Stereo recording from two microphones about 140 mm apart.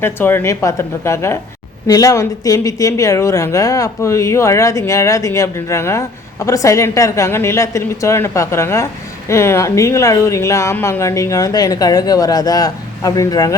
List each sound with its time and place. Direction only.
0.0 s speech: 15° left (ahead or behind)